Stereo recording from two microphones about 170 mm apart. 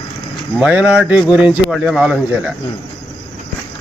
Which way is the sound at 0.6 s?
5° right (ahead or behind).